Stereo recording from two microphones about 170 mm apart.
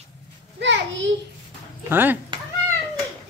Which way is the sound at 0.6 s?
90° right.